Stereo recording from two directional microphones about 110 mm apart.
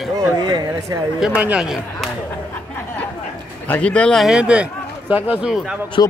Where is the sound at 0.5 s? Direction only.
40° right (ahead or behind).